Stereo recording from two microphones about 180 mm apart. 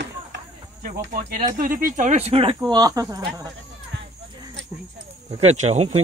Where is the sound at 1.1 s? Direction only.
50° right (ahead or behind); by 2.6 s 30° right (ahead or behind).